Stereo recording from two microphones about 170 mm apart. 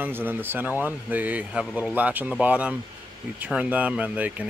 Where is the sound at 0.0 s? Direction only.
10° right (ahead or behind).